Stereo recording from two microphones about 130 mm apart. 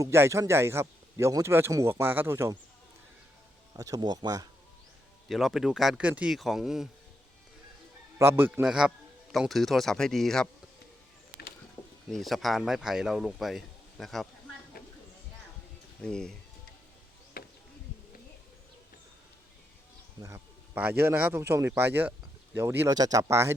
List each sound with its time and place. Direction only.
0.0 s a man's voice: 20° right (ahead or behind)
3.8 s a man's voice: 25° right (ahead or behind)
5.3 s speech: centre (ahead or behind)
8.2 s speech: 15° right (ahead or behind)
8.6 s speech: 5° right (ahead or behind)
11.8 s a sound: 15° left (ahead or behind)
12.1 s speech: centre (ahead or behind)
16.0 s speech: 5° left (ahead or behind)
17.4 s a sound: 90° left
20.2 s a man's voice: 20° right (ahead or behind)